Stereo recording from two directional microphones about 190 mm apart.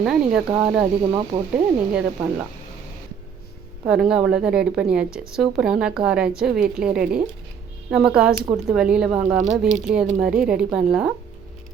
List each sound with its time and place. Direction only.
0.0 s speech: 5° right (ahead or behind)
3.8 s speech: 5° right (ahead or behind)